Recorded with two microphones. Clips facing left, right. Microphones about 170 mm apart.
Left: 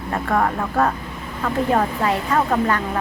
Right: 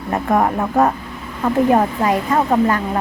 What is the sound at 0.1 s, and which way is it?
A woman's voice, 20° right (ahead or behind).